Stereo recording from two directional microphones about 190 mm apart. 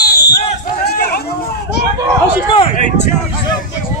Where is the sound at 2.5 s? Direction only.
40° left (ahead or behind).